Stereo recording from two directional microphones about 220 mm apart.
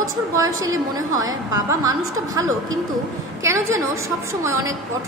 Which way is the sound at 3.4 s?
15° right (ahead or behind).